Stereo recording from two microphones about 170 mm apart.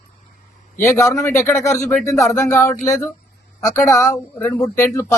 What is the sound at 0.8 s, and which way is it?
Speech, 15° left (ahead or behind).